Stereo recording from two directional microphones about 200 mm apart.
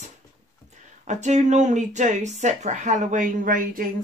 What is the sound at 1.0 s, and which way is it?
Speech, 35° right (ahead or behind).